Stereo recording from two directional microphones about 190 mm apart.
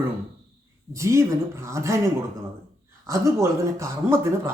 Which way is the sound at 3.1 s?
15° right (ahead or behind).